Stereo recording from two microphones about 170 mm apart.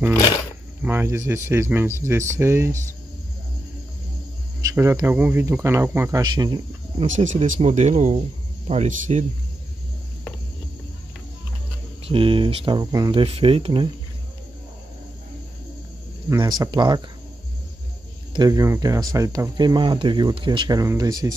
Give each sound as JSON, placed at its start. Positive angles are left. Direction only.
{"t": 0.8, "sound": "speech", "side_deg": -15}
{"t": 4.6, "sound": "speech", "side_deg": -20}
{"t": 7.1, "sound": "speech", "side_deg": -45}
{"t": 12.0, "sound": "speech", "side_deg": -30}
{"t": 16.3, "sound": "speech", "side_deg": -20}
{"t": 18.3, "sound": "speech", "side_deg": -25}